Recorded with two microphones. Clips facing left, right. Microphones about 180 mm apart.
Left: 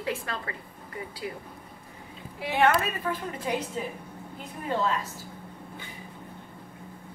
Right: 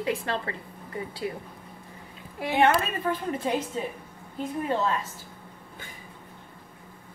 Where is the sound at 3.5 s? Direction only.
25° right (ahead or behind).